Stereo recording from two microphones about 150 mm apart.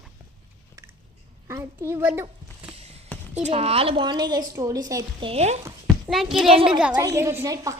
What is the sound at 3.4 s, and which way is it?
A woman's voice, 40° right (ahead or behind).